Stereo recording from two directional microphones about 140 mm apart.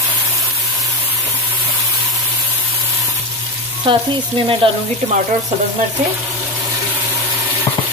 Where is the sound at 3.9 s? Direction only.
35° right (ahead or behind).